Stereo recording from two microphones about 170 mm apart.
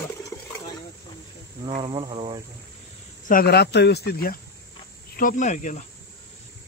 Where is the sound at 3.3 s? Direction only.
65° left (ahead or behind).